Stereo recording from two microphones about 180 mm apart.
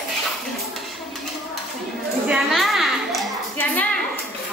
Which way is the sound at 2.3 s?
Centre (ahead or behind).